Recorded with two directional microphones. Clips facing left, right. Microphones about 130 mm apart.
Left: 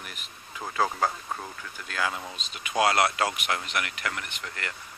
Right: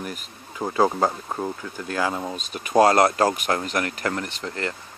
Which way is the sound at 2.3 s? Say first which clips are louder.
Right 10 dB; 45° right (ahead or behind).